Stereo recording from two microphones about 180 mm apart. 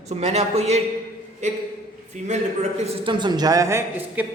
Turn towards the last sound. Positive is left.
turn(degrees=-15)  # may be behind; listen again after turning